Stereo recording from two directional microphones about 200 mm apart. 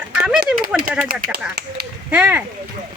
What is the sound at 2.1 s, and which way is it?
Speech, 5° right (ahead or behind).